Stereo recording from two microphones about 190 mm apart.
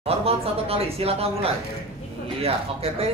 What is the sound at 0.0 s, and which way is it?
Speech, 30° right (ahead or behind).